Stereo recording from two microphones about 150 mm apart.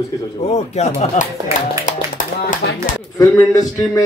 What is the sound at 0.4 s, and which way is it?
Speech, 45° left (ahead or behind).